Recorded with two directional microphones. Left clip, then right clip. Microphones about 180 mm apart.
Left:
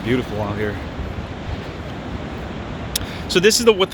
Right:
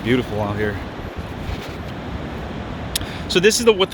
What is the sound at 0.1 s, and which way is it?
Speech, 15° right (ahead or behind).